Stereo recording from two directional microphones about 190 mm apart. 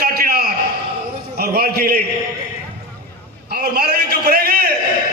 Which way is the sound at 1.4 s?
55° right (ahead or behind).